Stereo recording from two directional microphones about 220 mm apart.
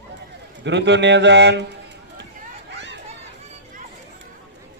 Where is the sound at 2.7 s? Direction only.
55° right (ahead or behind).